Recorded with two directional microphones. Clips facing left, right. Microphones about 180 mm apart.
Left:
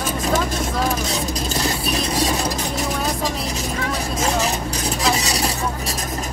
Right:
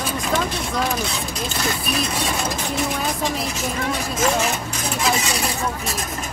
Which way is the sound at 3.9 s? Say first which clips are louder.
Right 1 dB; 35° left (ahead or behind).